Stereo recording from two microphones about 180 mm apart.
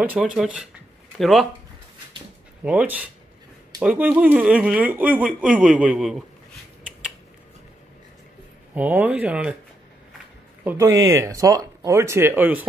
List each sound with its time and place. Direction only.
0.0 s speech: 5° right (ahead or behind)
2.6 s speech: 10° right (ahead or behind)
8.7 s speech: 10° right (ahead or behind)
10.6 s a man's voice: 10° right (ahead or behind)